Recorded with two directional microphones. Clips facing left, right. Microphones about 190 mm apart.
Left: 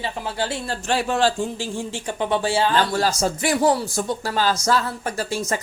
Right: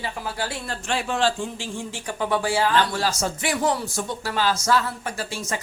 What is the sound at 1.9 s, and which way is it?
Speech, 25° left (ahead or behind).